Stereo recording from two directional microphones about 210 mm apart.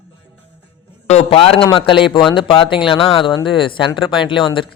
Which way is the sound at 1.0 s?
30° left (ahead or behind).